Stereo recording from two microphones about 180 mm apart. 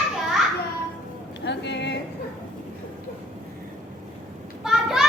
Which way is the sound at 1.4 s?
75° left (ahead or behind).